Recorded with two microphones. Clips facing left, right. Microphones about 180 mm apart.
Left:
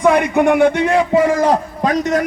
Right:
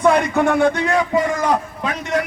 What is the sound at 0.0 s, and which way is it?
Speech, 15° left (ahead or behind).